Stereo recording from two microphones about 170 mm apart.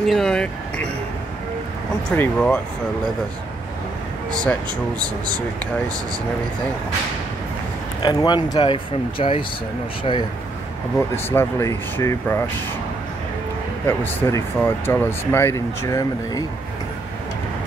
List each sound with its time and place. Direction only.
0.0 s speech: centre (ahead or behind)
2.1 s speech: 5° left (ahead or behind)
8.0 s speech: 25° left (ahead or behind)
11.0 s speech: 15° left (ahead or behind)
13.8 s speech: 15° left (ahead or behind)